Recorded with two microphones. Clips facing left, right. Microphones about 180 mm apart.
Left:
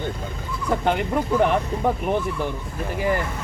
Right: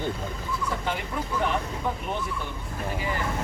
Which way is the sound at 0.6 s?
60° left (ahead or behind).